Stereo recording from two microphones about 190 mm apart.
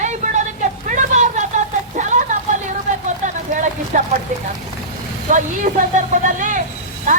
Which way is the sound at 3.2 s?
40° right (ahead or behind).